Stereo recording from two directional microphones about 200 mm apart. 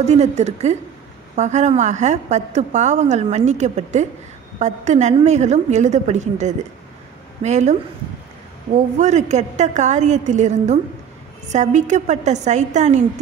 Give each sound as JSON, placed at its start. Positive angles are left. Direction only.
{"t": 0.0, "sound": "a woman's voice", "side_deg": -35}
{"t": 8.9, "sound": "a woman's voice", "side_deg": -35}